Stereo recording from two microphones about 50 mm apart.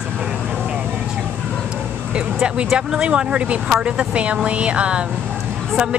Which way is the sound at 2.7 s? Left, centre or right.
Centre.